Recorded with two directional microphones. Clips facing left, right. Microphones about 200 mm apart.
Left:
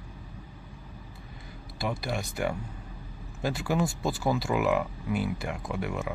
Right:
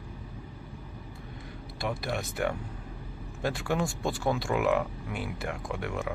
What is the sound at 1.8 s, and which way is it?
Speech, centre (ahead or behind).